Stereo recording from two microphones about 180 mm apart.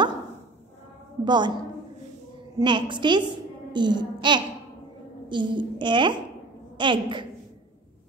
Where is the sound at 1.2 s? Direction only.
25° right (ahead or behind).